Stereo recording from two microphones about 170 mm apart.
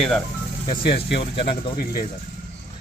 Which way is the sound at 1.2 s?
30° left (ahead or behind).